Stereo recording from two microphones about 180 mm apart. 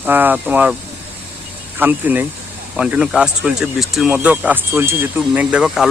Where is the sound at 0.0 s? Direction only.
10° right (ahead or behind).